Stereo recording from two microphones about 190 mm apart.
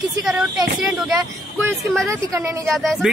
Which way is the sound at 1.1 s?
15° right (ahead or behind).